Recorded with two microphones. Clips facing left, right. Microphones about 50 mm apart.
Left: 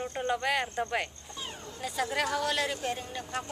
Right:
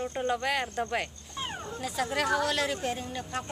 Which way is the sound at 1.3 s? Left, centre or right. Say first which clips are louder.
Right 5 dB; right.